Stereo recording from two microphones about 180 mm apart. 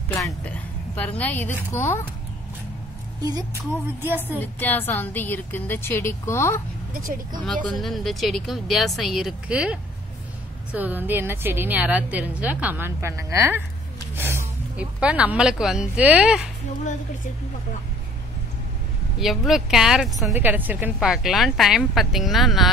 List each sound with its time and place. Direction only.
0.1 s a woman's voice: 10° left (ahead or behind)
3.2 s a woman's voice: 20° right (ahead or behind)
4.4 s a woman's voice: 10° left (ahead or behind)
7.0 s speech: 50° right (ahead or behind)
7.4 s a woman's voice: centre (ahead or behind)
19.1 s speech: centre (ahead or behind)